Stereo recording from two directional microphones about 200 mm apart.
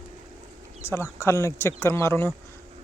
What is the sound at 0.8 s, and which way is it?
Speech, 10° left (ahead or behind).